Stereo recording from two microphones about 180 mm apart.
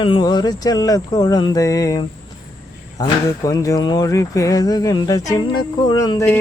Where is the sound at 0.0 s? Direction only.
25° left (ahead or behind).